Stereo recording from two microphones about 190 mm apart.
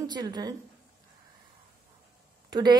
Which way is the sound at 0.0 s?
20° right (ahead or behind).